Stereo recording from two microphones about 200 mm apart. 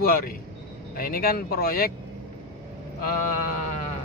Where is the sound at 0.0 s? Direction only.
45° left (ahead or behind).